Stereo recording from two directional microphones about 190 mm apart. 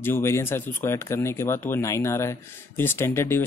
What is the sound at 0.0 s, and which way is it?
Speech, 10° left (ahead or behind).